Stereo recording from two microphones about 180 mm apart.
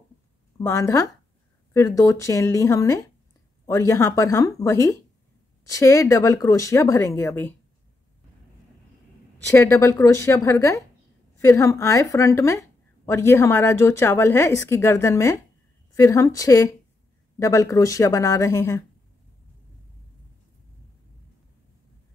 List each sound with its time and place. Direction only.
0.6 s a woman's voice: 15° left (ahead or behind)
9.5 s a woman's voice: 15° left (ahead or behind)